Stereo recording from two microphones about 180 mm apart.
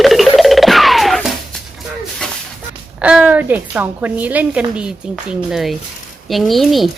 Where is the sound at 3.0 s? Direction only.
5° right (ahead or behind).